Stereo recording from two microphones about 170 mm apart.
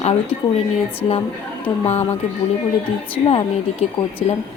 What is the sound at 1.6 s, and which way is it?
Speech, 35° left (ahead or behind).